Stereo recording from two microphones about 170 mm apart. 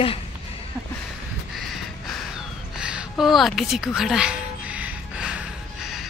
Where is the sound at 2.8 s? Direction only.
5° right (ahead or behind).